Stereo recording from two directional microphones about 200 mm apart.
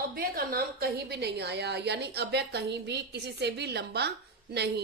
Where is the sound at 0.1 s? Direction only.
45° right (ahead or behind).